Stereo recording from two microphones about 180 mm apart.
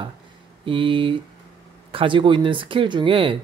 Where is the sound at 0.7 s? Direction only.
30° right (ahead or behind).